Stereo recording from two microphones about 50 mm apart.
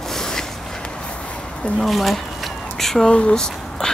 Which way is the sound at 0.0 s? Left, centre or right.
Centre.